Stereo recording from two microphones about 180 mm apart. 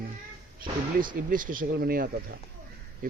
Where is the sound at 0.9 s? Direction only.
50° right (ahead or behind).